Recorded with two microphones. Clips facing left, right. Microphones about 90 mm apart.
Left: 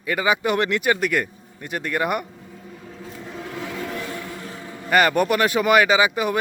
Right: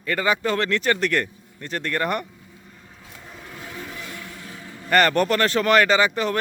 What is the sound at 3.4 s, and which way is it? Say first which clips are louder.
Vehicle: left 7 dB; 90° left.